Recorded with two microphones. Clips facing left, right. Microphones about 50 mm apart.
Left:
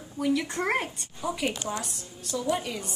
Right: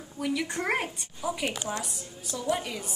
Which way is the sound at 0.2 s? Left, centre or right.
Centre.